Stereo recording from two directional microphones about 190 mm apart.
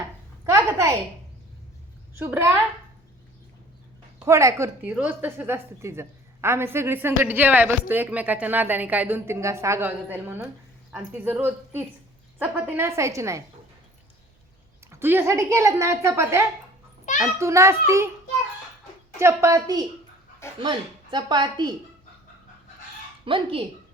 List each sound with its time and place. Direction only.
0.4 s a sound: 15° right (ahead or behind)
2.1 s a woman's voice: 10° right (ahead or behind)
4.2 s a woman's voice: 15° right (ahead or behind)
14.9 s a woman's voice: 10° right (ahead or behind)
17.1 s a child's voice: 40° left (ahead or behind)
17.4 s a woman's voice: 15° right (ahead or behind)
19.2 s a woman's voice: 15° right (ahead or behind)
23.2 s speech: 30° right (ahead or behind)